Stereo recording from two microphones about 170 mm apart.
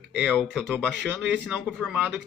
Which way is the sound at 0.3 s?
Centre (ahead or behind).